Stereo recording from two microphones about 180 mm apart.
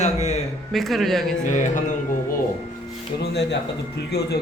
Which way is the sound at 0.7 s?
Centre (ahead or behind).